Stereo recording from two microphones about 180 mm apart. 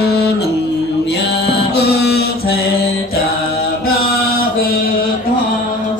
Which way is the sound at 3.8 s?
60° left (ahead or behind).